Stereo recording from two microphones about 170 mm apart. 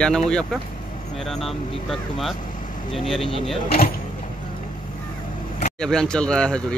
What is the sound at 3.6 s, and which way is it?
Speech, 60° left (ahead or behind).